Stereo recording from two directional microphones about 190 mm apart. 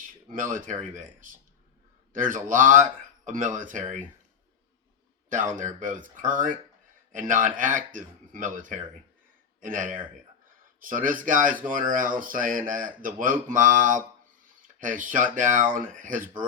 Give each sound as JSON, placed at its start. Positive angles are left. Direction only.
{"t": 0.3, "sound": "speech", "side_deg": -45}
{"t": 5.3, "sound": "speech", "side_deg": -40}